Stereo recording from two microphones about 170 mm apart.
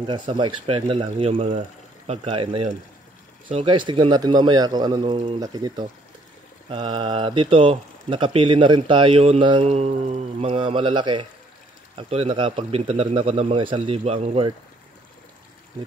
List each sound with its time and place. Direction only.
0.0 s a man's voice: 30° right (ahead or behind)